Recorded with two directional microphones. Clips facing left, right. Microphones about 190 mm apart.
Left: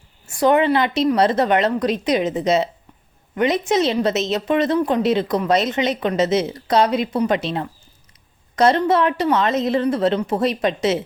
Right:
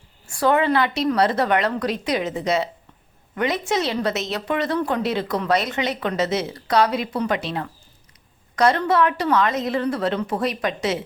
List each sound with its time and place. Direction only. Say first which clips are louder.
0.3 s a woman's voice: left 3 dB; 20° left (ahead or behind)